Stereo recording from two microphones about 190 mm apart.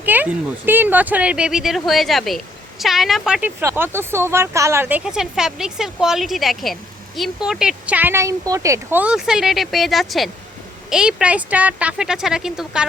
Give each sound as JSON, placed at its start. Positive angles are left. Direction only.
{"t": 0.0, "sound": "speech", "side_deg": -10}
{"t": 3.6, "sound": "speech", "side_deg": -15}